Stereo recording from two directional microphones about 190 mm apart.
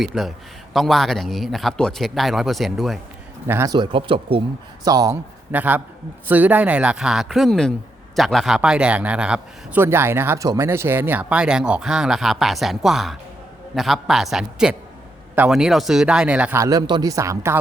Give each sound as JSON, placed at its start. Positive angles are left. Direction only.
{"t": 0.0, "sound": "a man's voice", "side_deg": 0}
{"t": 3.4, "sound": "speech", "side_deg": -15}
{"t": 4.9, "sound": "a man's voice", "side_deg": -15}